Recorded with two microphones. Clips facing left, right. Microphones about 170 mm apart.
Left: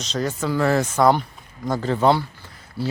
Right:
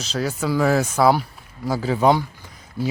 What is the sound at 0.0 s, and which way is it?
Speech, 5° right (ahead or behind).